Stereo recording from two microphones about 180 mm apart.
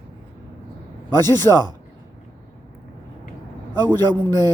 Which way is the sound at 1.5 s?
15° left (ahead or behind).